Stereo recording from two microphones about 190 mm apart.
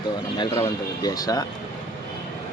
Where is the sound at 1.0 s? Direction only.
20° left (ahead or behind).